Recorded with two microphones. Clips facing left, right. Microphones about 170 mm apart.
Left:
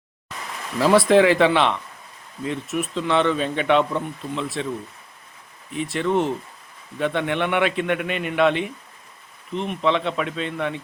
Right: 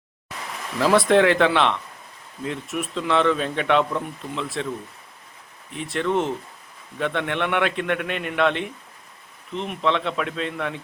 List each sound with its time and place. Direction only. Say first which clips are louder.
0.8 s speech: left 2 dB; centre (ahead or behind)
5.7 s speech: left 2 dB; centre (ahead or behind)